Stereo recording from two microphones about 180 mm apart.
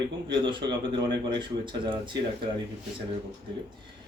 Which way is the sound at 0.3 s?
25° right (ahead or behind).